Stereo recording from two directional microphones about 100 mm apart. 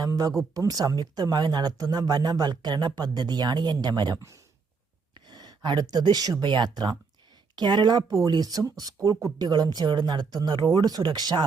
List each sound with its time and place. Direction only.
0.0 s speech: 40° right (ahead or behind)
5.3 s speech: 45° right (ahead or behind)